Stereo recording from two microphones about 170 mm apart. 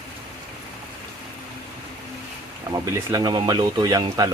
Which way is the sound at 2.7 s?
20° right (ahead or behind).